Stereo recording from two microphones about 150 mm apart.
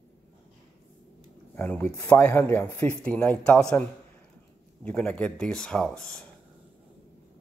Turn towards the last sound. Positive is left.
turn(degrees=5)  # may be behind; listen again after turning